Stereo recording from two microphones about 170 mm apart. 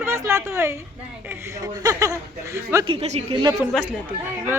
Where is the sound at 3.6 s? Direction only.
Centre (ahead or behind).